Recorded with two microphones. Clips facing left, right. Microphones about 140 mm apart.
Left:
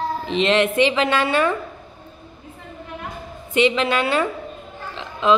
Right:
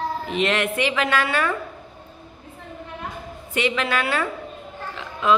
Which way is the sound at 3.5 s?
25° left (ahead or behind).